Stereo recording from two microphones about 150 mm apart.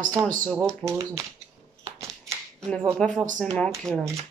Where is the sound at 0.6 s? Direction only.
20° right (ahead or behind).